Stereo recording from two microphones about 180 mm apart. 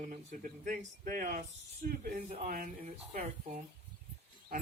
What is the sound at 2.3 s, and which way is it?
Speech, 40° right (ahead or behind).